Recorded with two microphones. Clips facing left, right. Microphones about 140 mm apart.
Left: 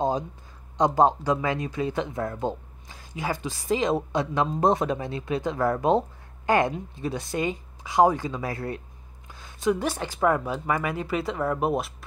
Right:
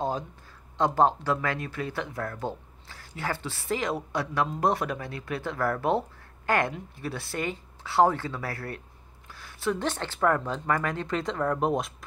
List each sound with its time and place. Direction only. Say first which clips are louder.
0.7 s speech: left 3 dB; 15° left (ahead or behind)